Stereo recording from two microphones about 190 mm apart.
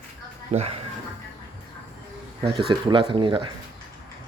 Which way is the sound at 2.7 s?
25° right (ahead or behind).